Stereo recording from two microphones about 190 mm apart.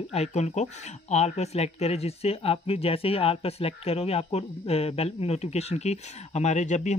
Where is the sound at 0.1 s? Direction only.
35° left (ahead or behind).